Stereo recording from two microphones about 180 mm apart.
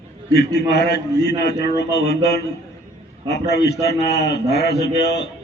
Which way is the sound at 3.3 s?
65° left (ahead or behind).